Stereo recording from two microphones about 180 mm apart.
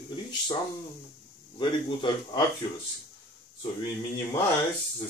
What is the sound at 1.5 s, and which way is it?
Speech, 25° left (ahead or behind).